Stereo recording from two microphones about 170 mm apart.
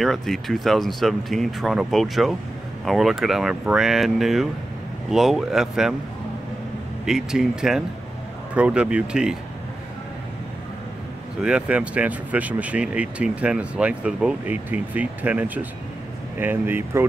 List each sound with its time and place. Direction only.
0.0 s speech: centre (ahead or behind)
7.1 s speech: 5° right (ahead or behind)
11.4 s speech: 5° right (ahead or behind)